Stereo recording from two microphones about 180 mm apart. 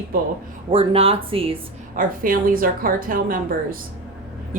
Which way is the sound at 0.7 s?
30° right (ahead or behind).